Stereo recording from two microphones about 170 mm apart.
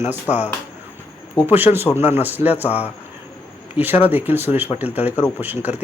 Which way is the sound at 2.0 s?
40° left (ahead or behind).